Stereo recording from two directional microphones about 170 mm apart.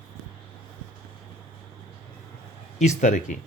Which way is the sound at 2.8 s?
45° left (ahead or behind).